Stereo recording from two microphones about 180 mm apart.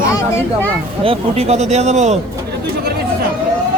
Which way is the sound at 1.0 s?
35° right (ahead or behind).